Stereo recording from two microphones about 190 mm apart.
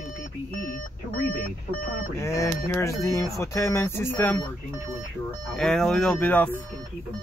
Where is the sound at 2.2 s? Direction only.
15° left (ahead or behind).